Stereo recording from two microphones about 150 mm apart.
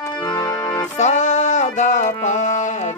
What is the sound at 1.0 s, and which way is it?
Music, 50° left (ahead or behind).